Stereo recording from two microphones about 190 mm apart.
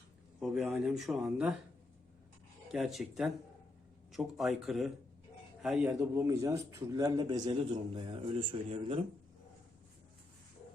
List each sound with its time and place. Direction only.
0.3 s speech: 5° right (ahead or behind)
2.7 s speech: centre (ahead or behind)
6.0 s a man's voice: 15° right (ahead or behind)